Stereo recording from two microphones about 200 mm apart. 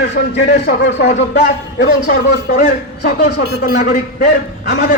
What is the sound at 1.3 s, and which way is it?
A man's voice, 50° left (ahead or behind).